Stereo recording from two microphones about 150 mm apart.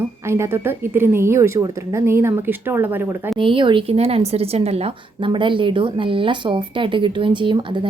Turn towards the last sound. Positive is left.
turn(degrees=-30)  # may be behind; listen again after turning